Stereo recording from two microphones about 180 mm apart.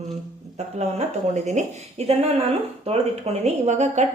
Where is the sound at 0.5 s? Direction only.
35° right (ahead or behind).